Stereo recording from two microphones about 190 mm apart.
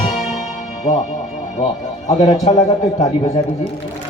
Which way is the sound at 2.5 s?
30° left (ahead or behind).